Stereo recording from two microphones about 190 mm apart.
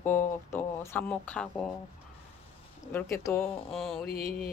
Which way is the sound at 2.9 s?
15° left (ahead or behind).